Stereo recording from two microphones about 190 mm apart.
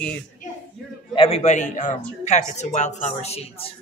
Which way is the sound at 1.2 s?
30° left (ahead or behind).